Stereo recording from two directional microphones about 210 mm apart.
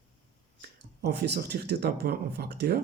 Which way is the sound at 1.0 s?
50° right (ahead or behind).